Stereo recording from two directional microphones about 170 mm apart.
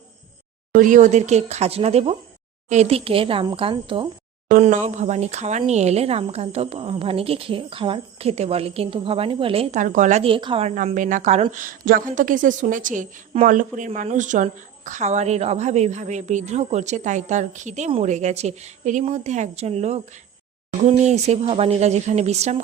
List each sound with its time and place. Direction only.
0.7 s speech: 50° right (ahead or behind); by 4.1 s 30° right (ahead or behind)
4.5 s speech: 45° right (ahead or behind)
9.8 s a woman's voice: 45° right (ahead or behind)
21.0 s speech: 40° right (ahead or behind)